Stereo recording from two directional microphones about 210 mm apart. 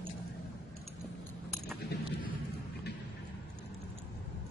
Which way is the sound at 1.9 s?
50° left (ahead or behind).